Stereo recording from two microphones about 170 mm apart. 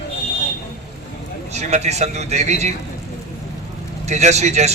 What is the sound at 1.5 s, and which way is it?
A man's voice, 40° right (ahead or behind).